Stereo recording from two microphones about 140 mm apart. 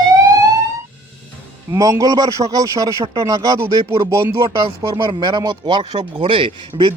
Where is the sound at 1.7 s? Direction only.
25° right (ahead or behind).